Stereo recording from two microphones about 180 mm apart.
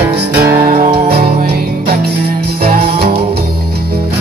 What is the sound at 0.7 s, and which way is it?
Music, 50° right (ahead or behind).